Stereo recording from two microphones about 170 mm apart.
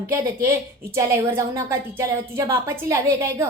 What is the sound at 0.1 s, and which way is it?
A woman's voice, 15° right (ahead or behind).